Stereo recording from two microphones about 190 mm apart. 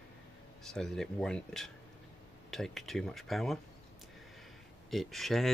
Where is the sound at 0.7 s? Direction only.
Centre (ahead or behind).